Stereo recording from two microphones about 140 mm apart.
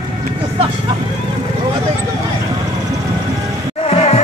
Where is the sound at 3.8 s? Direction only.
50° left (ahead or behind).